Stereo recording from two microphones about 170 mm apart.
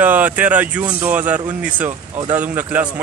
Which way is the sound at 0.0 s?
10° right (ahead or behind).